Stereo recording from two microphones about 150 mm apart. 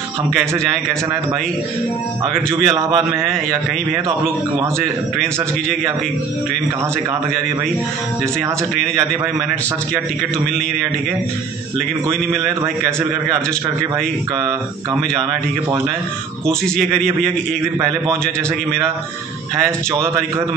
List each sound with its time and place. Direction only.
2.5 s a man's voice: 20° right (ahead or behind)
16.6 s a man's voice: 5° left (ahead or behind)
19.9 s a man's voice: 20° right (ahead or behind)